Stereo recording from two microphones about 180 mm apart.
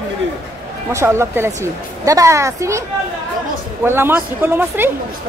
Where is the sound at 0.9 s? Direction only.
15° right (ahead or behind).